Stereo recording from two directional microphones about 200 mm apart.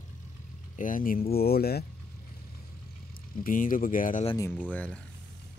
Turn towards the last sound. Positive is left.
turn(degrees=5)  # may be behind; listen again after turning